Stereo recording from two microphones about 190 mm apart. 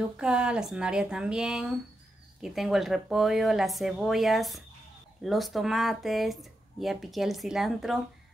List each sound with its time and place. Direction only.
0.2 s speech: 5° right (ahead or behind)